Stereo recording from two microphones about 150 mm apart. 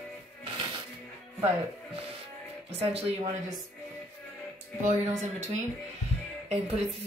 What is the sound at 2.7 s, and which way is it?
Speech, 45° right (ahead or behind).